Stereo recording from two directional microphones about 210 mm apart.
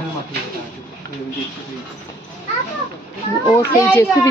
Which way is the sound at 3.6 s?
10° left (ahead or behind).